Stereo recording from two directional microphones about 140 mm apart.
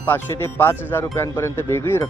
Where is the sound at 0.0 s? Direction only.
15° left (ahead or behind).